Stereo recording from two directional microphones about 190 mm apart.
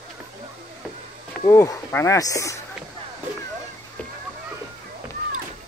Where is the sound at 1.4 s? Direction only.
15° left (ahead or behind).